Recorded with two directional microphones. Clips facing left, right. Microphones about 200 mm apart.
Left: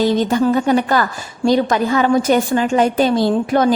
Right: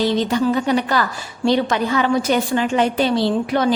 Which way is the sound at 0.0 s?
50° left (ahead or behind).